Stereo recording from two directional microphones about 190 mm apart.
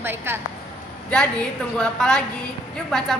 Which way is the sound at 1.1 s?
5° left (ahead or behind).